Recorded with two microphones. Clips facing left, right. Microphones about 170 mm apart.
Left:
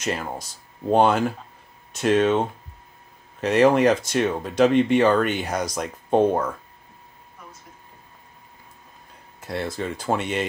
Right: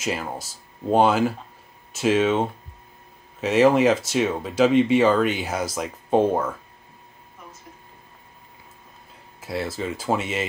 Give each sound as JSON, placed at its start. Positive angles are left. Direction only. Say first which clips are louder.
{"t": 0.0, "sound": "speech", "louder": "even", "side_deg": 0}
{"t": 9.4, "sound": "speech", "louder": "even", "side_deg": -5}